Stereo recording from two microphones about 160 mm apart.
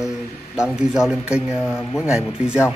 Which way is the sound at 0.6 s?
5° right (ahead or behind).